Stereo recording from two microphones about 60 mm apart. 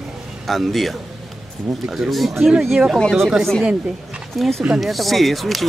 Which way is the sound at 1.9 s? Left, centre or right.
Centre.